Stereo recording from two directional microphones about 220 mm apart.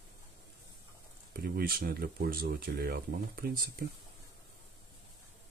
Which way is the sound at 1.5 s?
45° right (ahead or behind).